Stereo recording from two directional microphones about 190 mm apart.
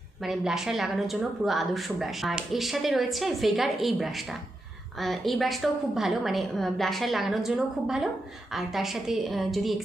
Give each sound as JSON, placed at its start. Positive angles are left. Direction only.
{"t": 0.2, "sound": "speech", "side_deg": 0}